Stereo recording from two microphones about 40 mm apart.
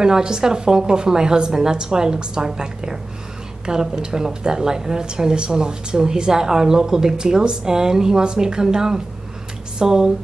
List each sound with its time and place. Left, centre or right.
0.0 s a woman's voice: centre